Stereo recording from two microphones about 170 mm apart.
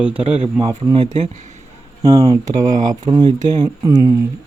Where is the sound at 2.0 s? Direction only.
20° right (ahead or behind).